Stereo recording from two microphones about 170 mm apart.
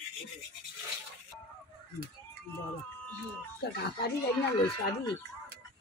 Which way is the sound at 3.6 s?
65° left (ahead or behind).